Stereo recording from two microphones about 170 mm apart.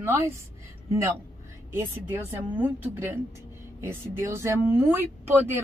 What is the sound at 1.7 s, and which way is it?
A woman's voice, 15° right (ahead or behind).